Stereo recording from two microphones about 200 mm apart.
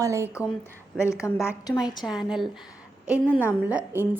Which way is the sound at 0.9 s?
15° left (ahead or behind).